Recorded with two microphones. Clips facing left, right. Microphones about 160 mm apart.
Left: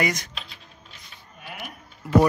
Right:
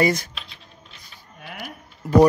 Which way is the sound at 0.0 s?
30° right (ahead or behind).